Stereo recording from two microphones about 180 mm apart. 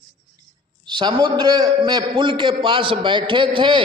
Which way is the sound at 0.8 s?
25° right (ahead or behind).